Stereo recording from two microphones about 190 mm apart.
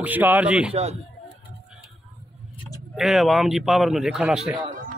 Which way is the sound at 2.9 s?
Centre (ahead or behind).